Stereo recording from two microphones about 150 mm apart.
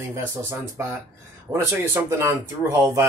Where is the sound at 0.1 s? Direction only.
15° right (ahead or behind).